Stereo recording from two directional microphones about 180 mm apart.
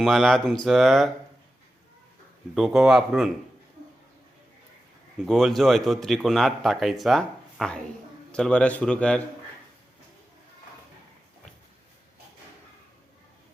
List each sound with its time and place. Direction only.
0.0 s speech: centre (ahead or behind)
2.6 s speech: centre (ahead or behind)
5.2 s speech: centre (ahead or behind)